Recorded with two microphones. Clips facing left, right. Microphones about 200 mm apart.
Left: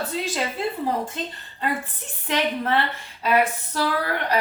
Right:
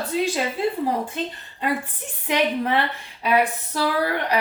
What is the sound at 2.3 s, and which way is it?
A woman's voice, 15° right (ahead or behind).